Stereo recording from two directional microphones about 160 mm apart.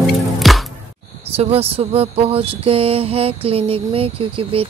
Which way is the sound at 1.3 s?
40° right (ahead or behind).